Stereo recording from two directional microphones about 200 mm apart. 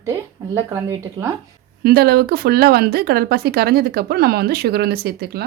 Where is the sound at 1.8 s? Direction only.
50° right (ahead or behind).